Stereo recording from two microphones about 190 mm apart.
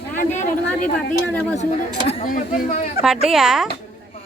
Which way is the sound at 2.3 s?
45° left (ahead or behind).